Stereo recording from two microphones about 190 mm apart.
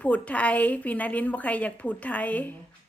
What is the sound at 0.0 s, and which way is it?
A woman's voice, 5° left (ahead or behind).